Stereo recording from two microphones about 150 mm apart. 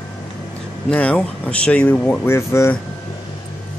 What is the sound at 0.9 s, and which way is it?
Speech, 10° left (ahead or behind).